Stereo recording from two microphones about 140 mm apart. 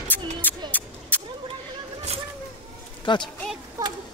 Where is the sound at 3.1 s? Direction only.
35° left (ahead or behind).